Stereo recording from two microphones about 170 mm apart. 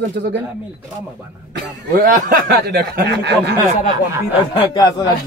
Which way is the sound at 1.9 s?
55° right (ahead or behind).